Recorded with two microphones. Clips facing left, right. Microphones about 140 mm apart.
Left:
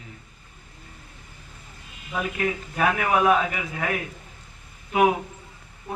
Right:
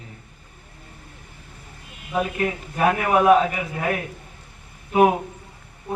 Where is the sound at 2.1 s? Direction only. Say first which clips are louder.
Right 3 dB; 30° right (ahead or behind).